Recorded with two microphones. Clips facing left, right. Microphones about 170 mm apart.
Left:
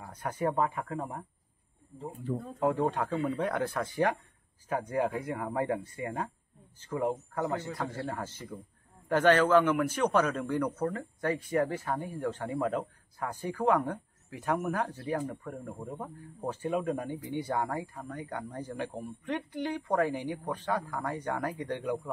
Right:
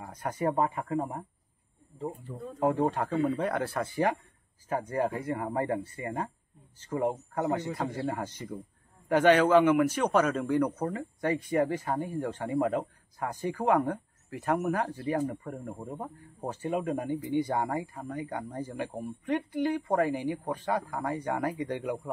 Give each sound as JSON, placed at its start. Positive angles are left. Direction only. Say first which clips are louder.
{"t": 0.0, "sound": "speech", "louder": "right 1 dB", "side_deg": -10}
{"t": 2.7, "sound": "speech", "louder": "right 2 dB", "side_deg": -10}
{"t": 4.8, "sound": "speech", "louder": "right 1 dB", "side_deg": 5}
{"t": 6.9, "sound": "speech", "louder": "right 2 dB", "side_deg": -10}